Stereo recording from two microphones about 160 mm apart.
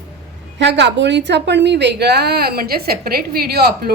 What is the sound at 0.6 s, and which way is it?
A woman's voice, 90° right.